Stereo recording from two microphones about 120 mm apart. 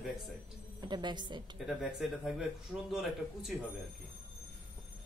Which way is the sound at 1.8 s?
5° right (ahead or behind).